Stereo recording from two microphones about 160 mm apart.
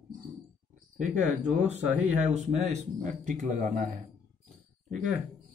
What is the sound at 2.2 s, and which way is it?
Speech, 45° right (ahead or behind).